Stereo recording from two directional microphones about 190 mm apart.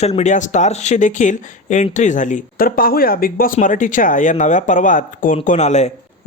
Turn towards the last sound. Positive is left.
turn(degrees=35)  # may be behind; listen again after turning